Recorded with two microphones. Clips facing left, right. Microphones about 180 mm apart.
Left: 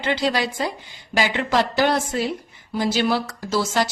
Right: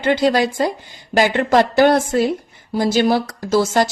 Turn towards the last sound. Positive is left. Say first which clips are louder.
# right 6 dB
turn(degrees=-45)  # may be behind; listen again after turning